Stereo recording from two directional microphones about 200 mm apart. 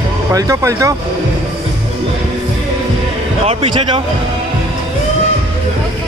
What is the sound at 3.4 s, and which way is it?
Speech, 25° right (ahead or behind).